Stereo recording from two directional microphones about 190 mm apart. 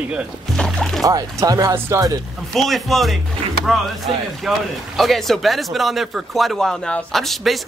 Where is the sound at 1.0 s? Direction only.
20° right (ahead or behind).